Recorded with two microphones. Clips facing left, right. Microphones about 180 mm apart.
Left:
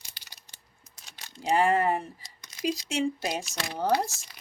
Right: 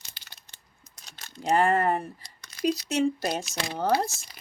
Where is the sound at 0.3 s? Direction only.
10° left (ahead or behind).